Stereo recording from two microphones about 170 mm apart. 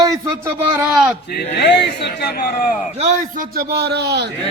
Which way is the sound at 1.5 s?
85° left.